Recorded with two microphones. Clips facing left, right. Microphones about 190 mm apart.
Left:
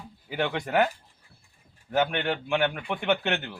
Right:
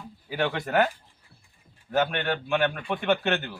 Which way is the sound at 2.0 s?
15° left (ahead or behind).